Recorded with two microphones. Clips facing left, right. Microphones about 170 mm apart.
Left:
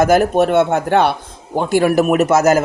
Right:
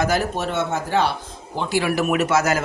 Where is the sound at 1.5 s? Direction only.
50° left (ahead or behind).